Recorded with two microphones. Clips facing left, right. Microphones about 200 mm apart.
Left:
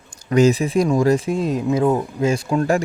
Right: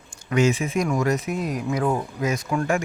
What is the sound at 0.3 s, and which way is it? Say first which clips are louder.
Speech: left 6 dB; 35° left (ahead or behind).